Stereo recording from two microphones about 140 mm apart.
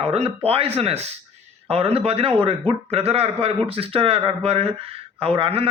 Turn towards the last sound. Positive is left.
turn(degrees=-40)  # may be behind; listen again after turning